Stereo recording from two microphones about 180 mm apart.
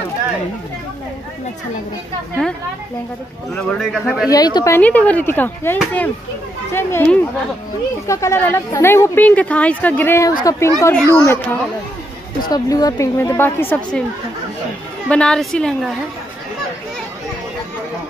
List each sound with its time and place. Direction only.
3.6 s a woman's voice: centre (ahead or behind)
4.3 s a woman's voice: 20° left (ahead or behind)
4.7 s speech: 10° left (ahead or behind)
12.4 s speech: 20° left (ahead or behind)
15.0 s a woman's voice: 5° left (ahead or behind)